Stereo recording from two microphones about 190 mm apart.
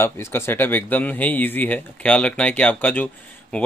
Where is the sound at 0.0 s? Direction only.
15° left (ahead or behind).